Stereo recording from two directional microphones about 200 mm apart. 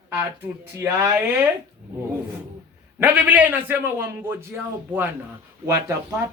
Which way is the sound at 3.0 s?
10° right (ahead or behind).